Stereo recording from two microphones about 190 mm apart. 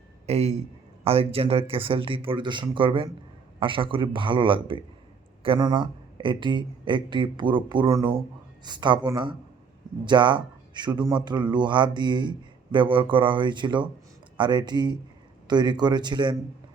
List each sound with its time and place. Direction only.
0.3 s a man's voice: 35° right (ahead or behind)